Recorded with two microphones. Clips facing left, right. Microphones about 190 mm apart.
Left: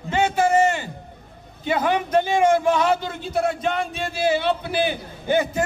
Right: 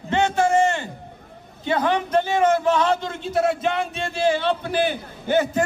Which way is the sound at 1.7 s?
10° left (ahead or behind).